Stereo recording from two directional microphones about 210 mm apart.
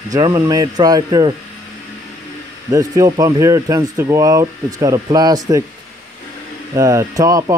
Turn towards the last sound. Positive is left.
turn(degrees=-15)  # may be behind; listen again after turning